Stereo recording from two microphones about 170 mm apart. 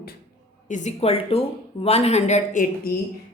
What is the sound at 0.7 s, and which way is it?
A woman's voice, 45° left (ahead or behind).